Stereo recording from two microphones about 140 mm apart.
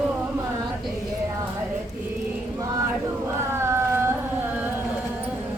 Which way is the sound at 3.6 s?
20° right (ahead or behind).